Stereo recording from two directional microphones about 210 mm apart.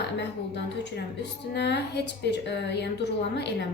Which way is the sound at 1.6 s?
55° left (ahead or behind).